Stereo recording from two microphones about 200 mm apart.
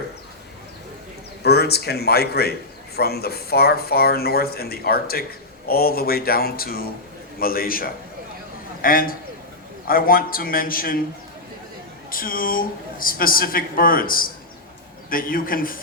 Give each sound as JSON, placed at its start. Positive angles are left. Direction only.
{"t": 1.5, "sound": "speech", "side_deg": 55}
{"t": 12.1, "sound": "speech", "side_deg": 45}